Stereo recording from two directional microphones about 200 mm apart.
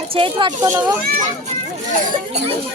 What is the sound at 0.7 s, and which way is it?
Speech, 10° right (ahead or behind).